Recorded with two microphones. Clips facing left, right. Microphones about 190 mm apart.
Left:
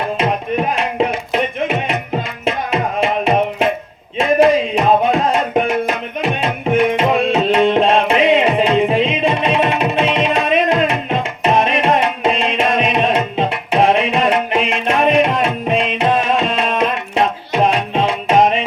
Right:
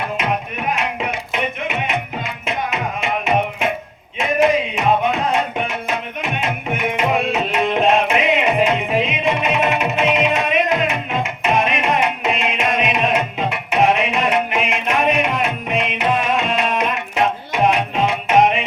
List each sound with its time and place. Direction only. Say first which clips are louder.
0.2 s music: left 5 dB; 30° left (ahead or behind)
4.2 s a sound: left 4 dB; 35° left (ahead or behind)
5.6 s music: left 6 dB; 35° left (ahead or behind)